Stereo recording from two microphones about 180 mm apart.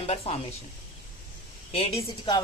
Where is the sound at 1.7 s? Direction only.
35° left (ahead or behind).